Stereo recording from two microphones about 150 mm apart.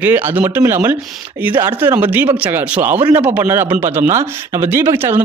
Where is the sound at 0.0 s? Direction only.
10° right (ahead or behind).